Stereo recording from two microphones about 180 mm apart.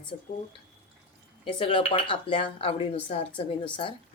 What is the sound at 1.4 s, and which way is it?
Speech, 30° left (ahead or behind).